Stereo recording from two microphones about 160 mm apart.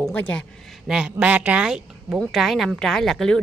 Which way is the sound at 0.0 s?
10° left (ahead or behind).